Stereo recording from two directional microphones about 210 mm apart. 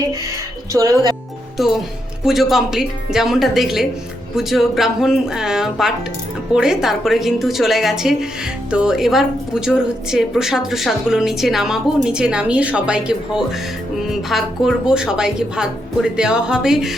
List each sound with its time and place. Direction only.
0.7 s speech: 15° right (ahead or behind)
1.5 s a woman's voice: centre (ahead or behind)